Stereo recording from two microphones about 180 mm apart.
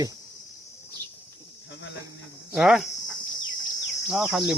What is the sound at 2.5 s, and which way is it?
Speech, 5° right (ahead or behind).